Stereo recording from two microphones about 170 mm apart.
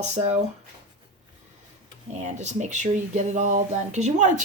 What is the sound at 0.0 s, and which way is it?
Speech, 40° right (ahead or behind).